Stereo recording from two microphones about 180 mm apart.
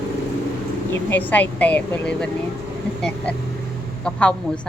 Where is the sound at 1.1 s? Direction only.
10° left (ahead or behind).